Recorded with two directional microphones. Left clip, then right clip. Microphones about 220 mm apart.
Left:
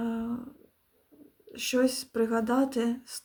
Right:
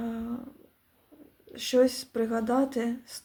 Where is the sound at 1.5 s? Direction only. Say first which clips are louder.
Right 3 dB; 20° left (ahead or behind).